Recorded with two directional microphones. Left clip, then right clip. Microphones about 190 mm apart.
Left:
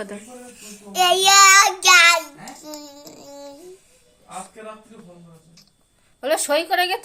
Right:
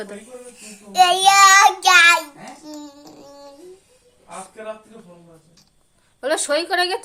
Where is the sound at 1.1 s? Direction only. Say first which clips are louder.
Left 1 dB; 20° right (ahead or behind).